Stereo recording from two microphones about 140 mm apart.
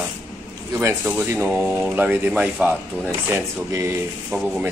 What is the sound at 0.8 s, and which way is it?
Speech, 15° right (ahead or behind).